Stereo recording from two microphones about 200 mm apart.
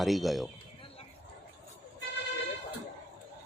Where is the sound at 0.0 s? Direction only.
Centre (ahead or behind).